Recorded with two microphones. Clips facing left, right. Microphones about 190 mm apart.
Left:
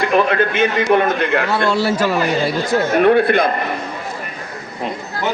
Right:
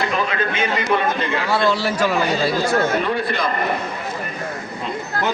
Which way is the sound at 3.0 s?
60° left (ahead or behind).